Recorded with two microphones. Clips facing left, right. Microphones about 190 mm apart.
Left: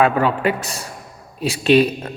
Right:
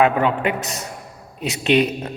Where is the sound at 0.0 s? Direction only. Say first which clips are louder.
Left 1 dB; 20° right (ahead or behind).